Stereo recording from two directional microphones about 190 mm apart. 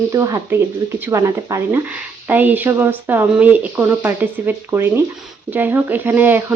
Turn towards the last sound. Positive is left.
turn(degrees=-10)  # may be behind; listen again after turning